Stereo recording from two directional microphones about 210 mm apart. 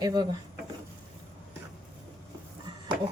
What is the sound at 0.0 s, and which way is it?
Speech, 20° right (ahead or behind).